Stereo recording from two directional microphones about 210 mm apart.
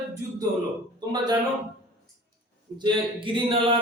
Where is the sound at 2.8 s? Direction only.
25° right (ahead or behind).